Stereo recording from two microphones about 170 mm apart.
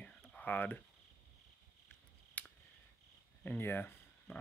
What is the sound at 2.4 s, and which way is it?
Scissors, 10° left (ahead or behind).